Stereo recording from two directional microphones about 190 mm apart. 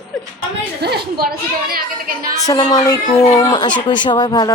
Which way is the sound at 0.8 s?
60° right (ahead or behind).